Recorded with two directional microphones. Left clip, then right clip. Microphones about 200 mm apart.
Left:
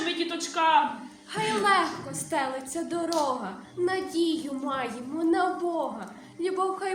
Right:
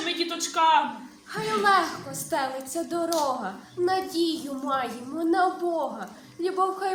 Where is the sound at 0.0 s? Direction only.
10° right (ahead or behind).